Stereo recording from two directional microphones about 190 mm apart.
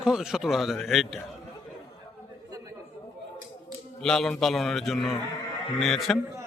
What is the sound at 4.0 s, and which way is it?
A man's voice, 5° left (ahead or behind).